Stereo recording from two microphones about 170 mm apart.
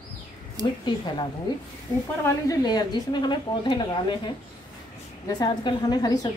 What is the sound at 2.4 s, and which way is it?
A woman's voice, 20° left (ahead or behind).